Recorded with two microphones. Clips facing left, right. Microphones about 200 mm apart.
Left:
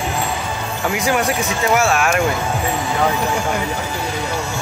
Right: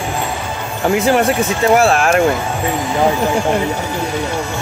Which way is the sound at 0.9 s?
30° right (ahead or behind).